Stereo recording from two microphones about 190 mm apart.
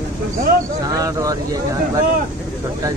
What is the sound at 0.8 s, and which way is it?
Speech, 15° right (ahead or behind).